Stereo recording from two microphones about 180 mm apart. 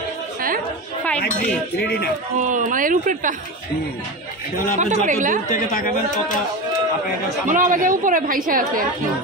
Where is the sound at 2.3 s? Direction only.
45° right (ahead or behind).